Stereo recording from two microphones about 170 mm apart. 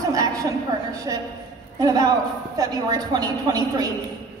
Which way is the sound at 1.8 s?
20° right (ahead or behind).